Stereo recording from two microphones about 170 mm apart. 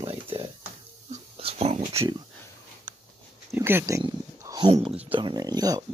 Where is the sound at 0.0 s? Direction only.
35° right (ahead or behind).